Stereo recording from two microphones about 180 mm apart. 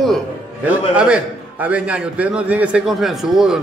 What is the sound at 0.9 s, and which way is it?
A man's voice, 5° right (ahead or behind).